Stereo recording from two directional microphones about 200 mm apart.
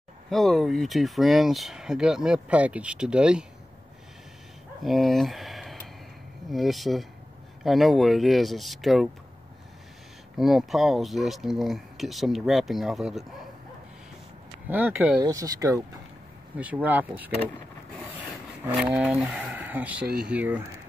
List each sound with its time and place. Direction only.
0.3 s speech: centre (ahead or behind)
4.8 s speech: centre (ahead or behind)
10.3 s speech: centre (ahead or behind)
14.7 s speech: 10° right (ahead or behind)
18.7 s speech: 5° right (ahead or behind)